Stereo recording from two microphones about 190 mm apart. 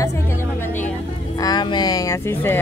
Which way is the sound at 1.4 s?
20° left (ahead or behind).